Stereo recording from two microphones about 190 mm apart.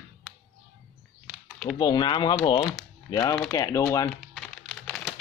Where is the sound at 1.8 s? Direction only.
25° left (ahead or behind).